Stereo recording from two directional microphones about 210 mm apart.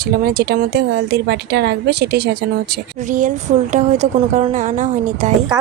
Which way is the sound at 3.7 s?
35° right (ahead or behind).